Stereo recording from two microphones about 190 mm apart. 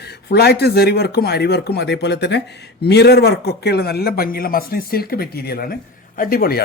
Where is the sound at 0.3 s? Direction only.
55° left (ahead or behind).